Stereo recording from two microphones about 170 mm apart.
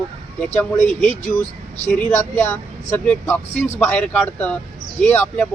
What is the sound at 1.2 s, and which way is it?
Speech, 45° left (ahead or behind).